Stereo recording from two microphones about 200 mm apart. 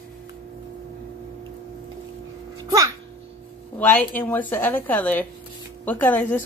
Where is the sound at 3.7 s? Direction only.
10° left (ahead or behind).